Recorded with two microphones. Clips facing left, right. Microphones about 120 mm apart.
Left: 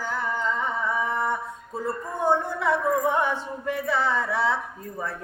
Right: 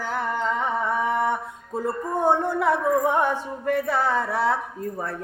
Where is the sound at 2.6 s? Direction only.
50° right (ahead or behind).